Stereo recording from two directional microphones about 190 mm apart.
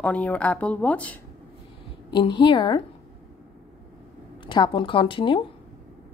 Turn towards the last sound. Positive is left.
turn(degrees=25)  # may be behind; listen again after turning